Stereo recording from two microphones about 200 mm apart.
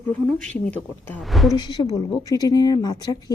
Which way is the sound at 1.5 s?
20° left (ahead or behind).